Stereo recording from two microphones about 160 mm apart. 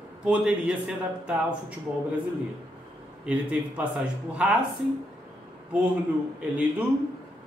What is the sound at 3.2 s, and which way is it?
A man's voice, 5° right (ahead or behind).